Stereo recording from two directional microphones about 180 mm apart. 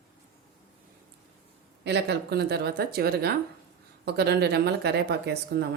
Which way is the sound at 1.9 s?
70° right (ahead or behind).